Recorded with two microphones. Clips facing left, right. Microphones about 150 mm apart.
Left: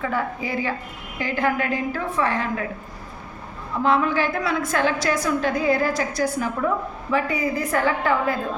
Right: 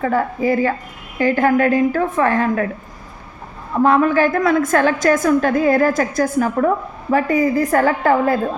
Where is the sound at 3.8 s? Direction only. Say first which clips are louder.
Right 6 dB; 50° right (ahead or behind).